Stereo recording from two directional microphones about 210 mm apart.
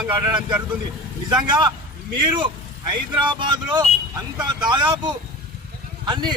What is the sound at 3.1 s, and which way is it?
A man's voice, 20° right (ahead or behind).